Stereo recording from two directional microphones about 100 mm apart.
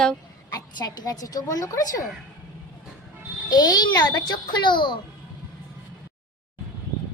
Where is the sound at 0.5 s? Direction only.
40° left (ahead or behind).